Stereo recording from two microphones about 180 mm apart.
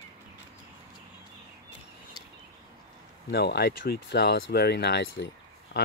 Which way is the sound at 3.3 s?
65° left (ahead or behind).